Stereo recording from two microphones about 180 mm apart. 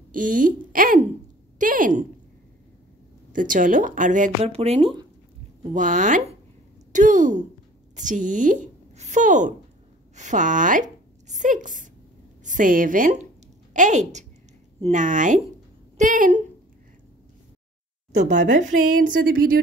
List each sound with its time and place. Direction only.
0.1 s a woman's voice: 50° right (ahead or behind)
3.3 s a woman's voice: 45° right (ahead or behind)
4.4 s a woman's voice: 35° right (ahead or behind)
18.3 s a woman's voice: 45° right (ahead or behind)